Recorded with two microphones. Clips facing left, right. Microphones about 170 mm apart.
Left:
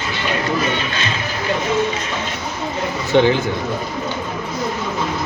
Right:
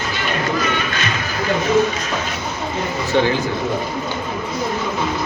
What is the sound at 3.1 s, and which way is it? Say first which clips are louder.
Speech: left 4 dB; 20° left (ahead or behind).